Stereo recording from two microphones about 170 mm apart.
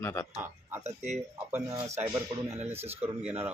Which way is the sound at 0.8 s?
45° right (ahead or behind).